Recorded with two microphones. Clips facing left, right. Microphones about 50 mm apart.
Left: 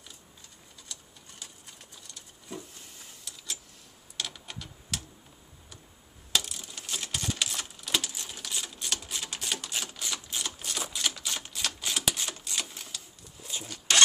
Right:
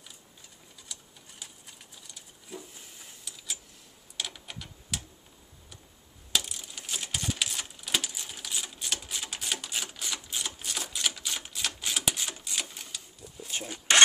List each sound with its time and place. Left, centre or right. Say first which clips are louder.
0.9 s sewing machine: even; centre
1.4 s a sound: even; centre
4.2 s typewriter: even; centre
6.3 s typewriter: left 1 dB; centre
13.7 s rub: right 3 dB; right